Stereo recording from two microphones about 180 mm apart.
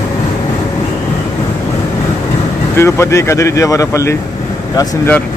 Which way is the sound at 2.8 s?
15° left (ahead or behind).